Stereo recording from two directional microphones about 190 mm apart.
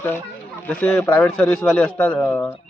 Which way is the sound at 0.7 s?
5° left (ahead or behind).